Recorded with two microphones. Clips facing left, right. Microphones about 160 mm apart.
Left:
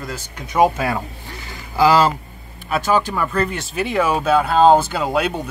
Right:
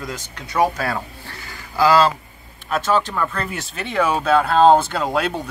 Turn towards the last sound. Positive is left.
turn(degrees=0)  # may be behind; listen again after turning